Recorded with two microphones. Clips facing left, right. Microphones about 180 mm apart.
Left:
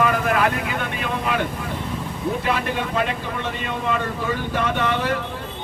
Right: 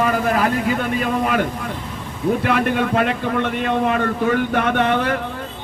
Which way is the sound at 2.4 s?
55° right (ahead or behind).